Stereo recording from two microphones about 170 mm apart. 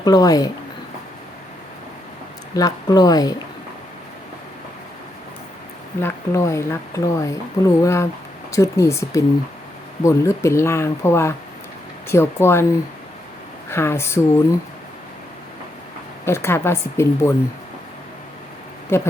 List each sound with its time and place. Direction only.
0.0 s speech: 20° left (ahead or behind)
2.6 s speech: 20° left (ahead or behind)
6.0 s speech: 15° left (ahead or behind)
13.7 s speech: 15° left (ahead or behind)
16.2 s speech: 15° left (ahead or behind)
18.9 s speech: 15° left (ahead or behind)